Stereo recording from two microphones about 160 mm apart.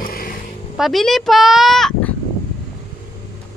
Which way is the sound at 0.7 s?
Centre (ahead or behind).